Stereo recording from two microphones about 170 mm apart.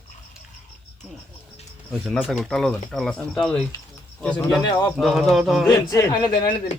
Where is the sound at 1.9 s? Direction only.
Centre (ahead or behind).